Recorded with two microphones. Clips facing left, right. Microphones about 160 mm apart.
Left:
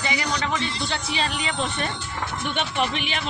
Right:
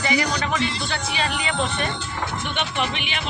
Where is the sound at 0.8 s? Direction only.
30° left (ahead or behind).